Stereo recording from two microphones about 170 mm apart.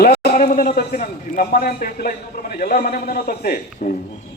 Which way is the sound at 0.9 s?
50° left (ahead or behind).